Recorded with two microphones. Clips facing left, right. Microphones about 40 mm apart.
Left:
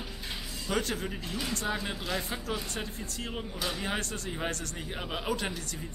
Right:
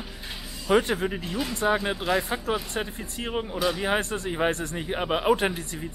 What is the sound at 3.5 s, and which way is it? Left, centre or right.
Speech, centre.